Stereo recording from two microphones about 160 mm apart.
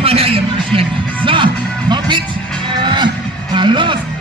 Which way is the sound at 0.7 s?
30° right (ahead or behind).